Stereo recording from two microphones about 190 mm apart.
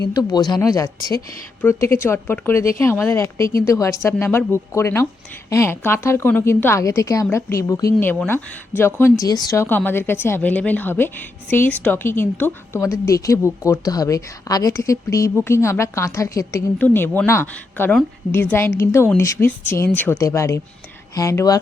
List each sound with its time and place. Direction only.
0.0 s a woman's voice: 20° left (ahead or behind)